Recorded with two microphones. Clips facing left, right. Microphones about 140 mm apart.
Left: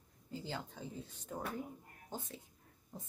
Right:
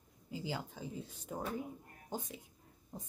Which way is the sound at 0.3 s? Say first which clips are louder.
Right 2 dB; 10° right (ahead or behind).